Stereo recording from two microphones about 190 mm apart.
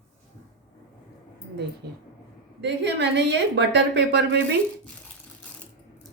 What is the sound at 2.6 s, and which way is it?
Speech, 65° right (ahead or behind).